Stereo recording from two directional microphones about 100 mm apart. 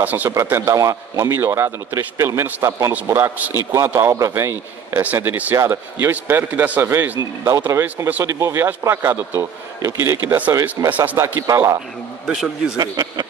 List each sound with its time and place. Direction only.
0.0 s a man's voice: 20° right (ahead or behind)
0.3 s a man's voice: 30° right (ahead or behind)
7.2 s a man's voice: 35° right (ahead or behind)
10.9 s a man's voice: 15° right (ahead or behind)
11.3 s speech: 35° right (ahead or behind)
12.3 s a man's voice: 5° right (ahead or behind)
12.7 s speech: 40° right (ahead or behind)